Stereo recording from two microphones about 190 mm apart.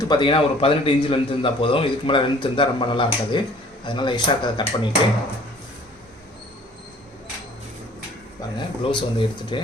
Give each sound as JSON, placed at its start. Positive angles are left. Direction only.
{"t": 0.0, "sound": "a man's voice", "side_deg": 25}
{"t": 8.5, "sound": "a man's voice", "side_deg": 25}